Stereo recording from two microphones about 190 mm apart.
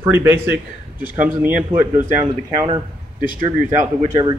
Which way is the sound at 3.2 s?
45° right (ahead or behind).